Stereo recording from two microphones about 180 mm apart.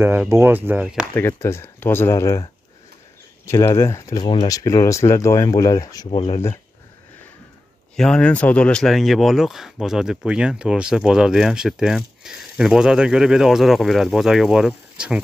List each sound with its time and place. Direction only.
0.0 s speech: 10° right (ahead or behind)
1.1 s speech: 15° left (ahead or behind)
7.9 s speech: 5° left (ahead or behind)